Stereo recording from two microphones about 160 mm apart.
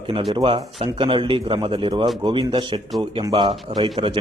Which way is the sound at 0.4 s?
35° right (ahead or behind).